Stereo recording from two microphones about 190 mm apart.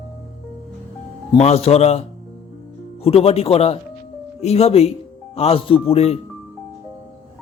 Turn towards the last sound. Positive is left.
turn(degrees=35)  # may be behind; listen again after turning